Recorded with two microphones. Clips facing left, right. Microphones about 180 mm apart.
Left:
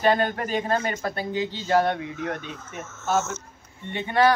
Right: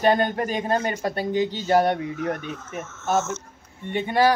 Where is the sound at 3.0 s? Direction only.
15° right (ahead or behind).